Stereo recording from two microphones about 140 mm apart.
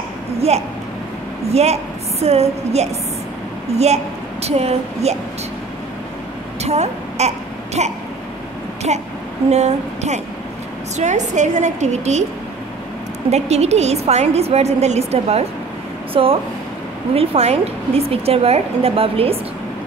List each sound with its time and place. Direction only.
0.4 s a woman's voice: 50° right (ahead or behind)
6.6 s a woman's voice: 50° right (ahead or behind)
13.3 s a woman's voice: 50° right (ahead or behind)